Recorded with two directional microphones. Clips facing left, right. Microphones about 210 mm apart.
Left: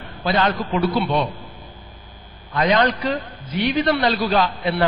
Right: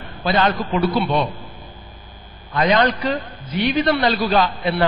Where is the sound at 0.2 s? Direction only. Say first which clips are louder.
Right 1 dB; 20° right (ahead or behind).